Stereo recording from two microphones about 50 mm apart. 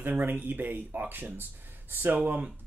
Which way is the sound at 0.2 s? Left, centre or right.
Right.